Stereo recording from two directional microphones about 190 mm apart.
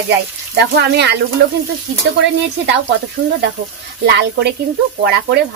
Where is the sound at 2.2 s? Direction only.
70° right (ahead or behind).